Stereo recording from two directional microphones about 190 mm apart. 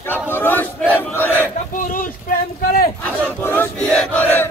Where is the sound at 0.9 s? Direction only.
10° left (ahead or behind).